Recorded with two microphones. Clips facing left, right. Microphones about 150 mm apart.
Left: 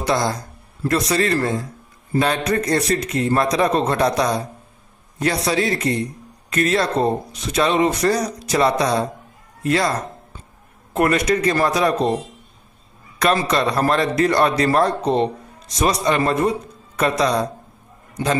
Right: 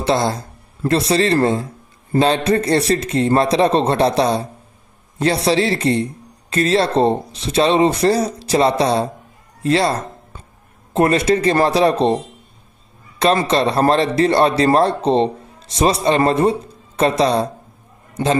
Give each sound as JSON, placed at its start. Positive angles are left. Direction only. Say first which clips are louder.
{"t": 0.0, "sound": "speech", "louder": "right 3 dB", "side_deg": -25}
{"t": 13.5, "sound": "speech", "louder": "right 3 dB", "side_deg": -30}